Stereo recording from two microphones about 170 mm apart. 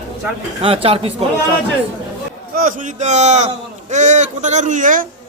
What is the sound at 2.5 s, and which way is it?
A man's voice, 50° right (ahead or behind).